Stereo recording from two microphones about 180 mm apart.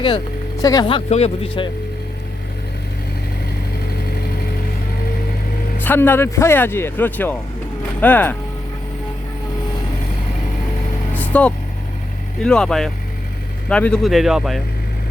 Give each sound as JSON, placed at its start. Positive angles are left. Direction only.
{"t": 0.0, "sound": "speech", "side_deg": 20}
{"t": 5.8, "sound": "speech", "side_deg": 10}
{"t": 11.1, "sound": "vehicle", "side_deg": 10}
{"t": 12.4, "sound": "speech", "side_deg": 5}